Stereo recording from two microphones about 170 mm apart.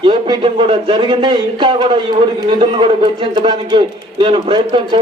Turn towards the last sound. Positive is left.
turn(degrees=-30)  # may be behind; listen again after turning